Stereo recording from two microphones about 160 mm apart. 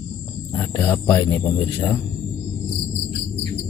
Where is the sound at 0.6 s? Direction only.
20° left (ahead or behind).